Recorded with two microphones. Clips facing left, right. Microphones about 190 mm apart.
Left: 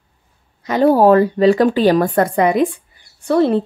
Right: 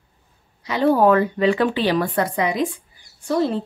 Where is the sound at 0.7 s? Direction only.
45° left (ahead or behind).